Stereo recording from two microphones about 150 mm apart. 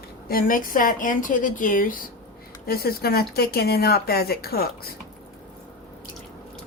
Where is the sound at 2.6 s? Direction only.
90° left.